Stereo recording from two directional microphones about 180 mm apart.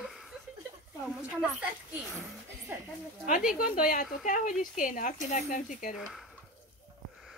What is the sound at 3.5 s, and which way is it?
Speech, 50° left (ahead or behind).